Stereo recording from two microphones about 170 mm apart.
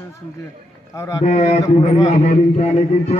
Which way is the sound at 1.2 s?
45° left (ahead or behind).